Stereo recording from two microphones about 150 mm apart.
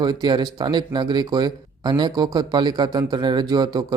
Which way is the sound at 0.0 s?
30° right (ahead or behind).